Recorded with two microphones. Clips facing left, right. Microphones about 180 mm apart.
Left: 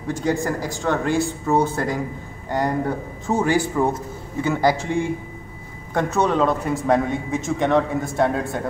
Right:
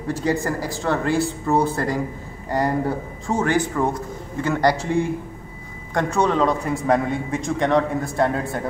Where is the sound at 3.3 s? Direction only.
10° left (ahead or behind).